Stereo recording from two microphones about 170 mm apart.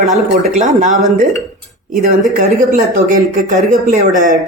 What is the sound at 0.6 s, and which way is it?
Speech, 45° right (ahead or behind).